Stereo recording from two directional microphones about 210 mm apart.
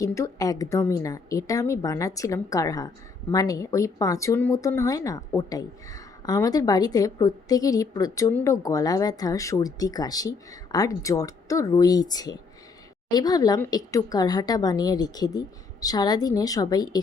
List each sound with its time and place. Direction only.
0.0 s a woman's voice: 15° left (ahead or behind)